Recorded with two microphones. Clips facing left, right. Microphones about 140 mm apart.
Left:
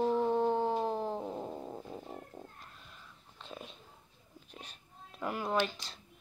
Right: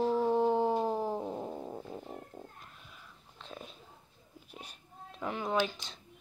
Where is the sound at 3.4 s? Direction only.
Centre (ahead or behind).